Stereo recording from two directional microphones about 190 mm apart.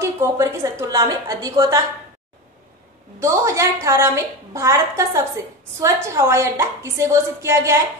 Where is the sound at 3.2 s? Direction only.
15° right (ahead or behind).